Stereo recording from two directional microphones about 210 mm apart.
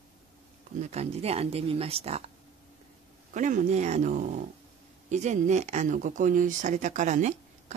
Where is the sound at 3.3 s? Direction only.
35° right (ahead or behind).